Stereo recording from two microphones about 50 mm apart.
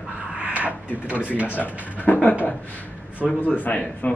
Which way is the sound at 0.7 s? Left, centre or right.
Right.